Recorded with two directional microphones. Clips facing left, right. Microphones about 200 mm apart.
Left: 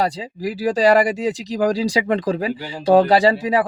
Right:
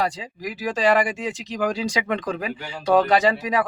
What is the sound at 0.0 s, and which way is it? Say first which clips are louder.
Speech: left 4 dB; 35° left (ahead or behind).